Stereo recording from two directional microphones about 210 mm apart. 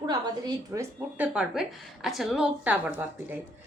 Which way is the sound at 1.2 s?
5° right (ahead or behind).